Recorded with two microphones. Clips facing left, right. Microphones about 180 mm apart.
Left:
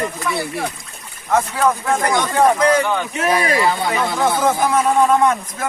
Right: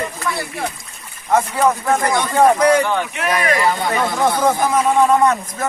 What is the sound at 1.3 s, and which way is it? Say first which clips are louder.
Speech: right 1 dB; 10° right (ahead or behind).